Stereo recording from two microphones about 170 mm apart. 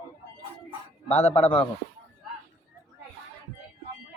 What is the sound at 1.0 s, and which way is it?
Speech, 40° left (ahead or behind).